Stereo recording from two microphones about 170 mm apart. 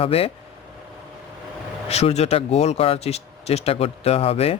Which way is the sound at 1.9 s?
40° left (ahead or behind).